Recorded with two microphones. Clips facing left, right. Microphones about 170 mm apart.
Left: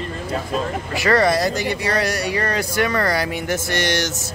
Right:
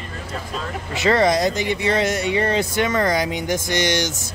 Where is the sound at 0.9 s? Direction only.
20° right (ahead or behind).